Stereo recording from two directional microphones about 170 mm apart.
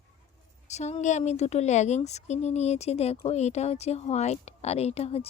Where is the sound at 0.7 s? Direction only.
40° left (ahead or behind).